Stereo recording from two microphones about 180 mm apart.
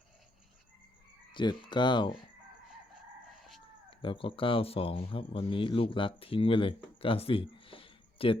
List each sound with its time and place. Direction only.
1.3 s speech: 25° left (ahead or behind)
3.3 s a sound: centre (ahead or behind)
3.8 s speech: 30° left (ahead or behind)